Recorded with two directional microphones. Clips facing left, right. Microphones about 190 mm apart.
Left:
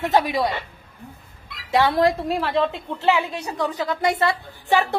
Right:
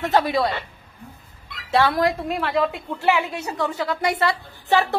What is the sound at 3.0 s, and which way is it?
A woman's voice, 15° left (ahead or behind).